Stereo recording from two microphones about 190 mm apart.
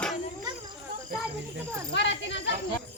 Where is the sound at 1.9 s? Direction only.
65° left (ahead or behind).